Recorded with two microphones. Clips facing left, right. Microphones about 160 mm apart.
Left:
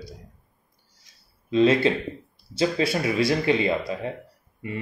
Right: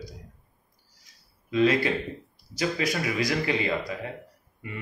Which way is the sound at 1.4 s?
25° left (ahead or behind).